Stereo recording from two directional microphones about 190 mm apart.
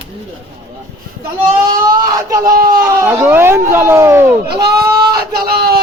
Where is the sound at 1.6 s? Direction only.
20° right (ahead or behind).